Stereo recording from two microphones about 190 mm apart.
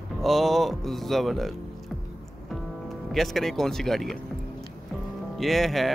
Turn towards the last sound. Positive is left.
turn(degrees=0)  # may be behind; listen again after turning